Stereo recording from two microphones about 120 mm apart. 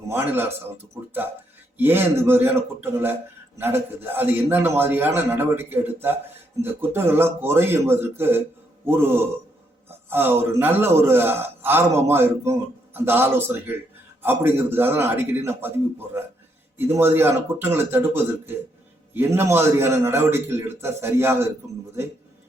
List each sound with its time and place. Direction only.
0.1 s a man's voice: 20° right (ahead or behind)
10.1 s a man's voice: 20° right (ahead or behind)